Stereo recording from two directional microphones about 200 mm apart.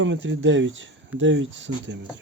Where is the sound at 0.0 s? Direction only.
65° right (ahead or behind).